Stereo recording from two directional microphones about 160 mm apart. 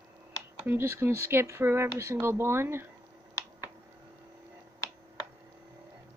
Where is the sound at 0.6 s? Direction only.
15° right (ahead or behind).